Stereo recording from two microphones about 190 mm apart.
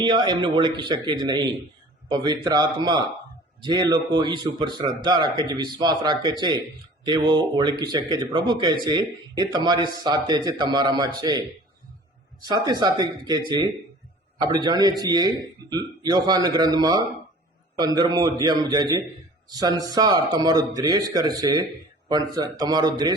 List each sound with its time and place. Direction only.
0.0 s a man's voice: 25° right (ahead or behind)